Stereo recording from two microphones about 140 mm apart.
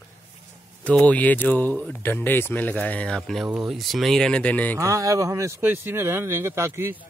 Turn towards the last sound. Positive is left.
turn(degrees=-15)  # may be behind; listen again after turning